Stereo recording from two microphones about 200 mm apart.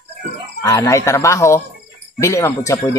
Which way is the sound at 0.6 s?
15° left (ahead or behind).